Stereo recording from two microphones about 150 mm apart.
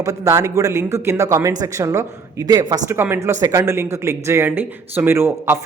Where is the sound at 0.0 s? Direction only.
20° right (ahead or behind).